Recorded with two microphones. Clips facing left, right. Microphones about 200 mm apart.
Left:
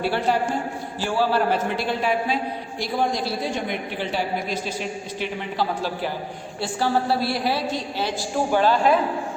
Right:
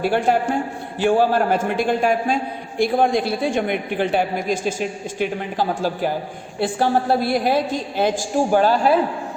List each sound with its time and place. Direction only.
0.0 s a man's voice: 50° right (ahead or behind)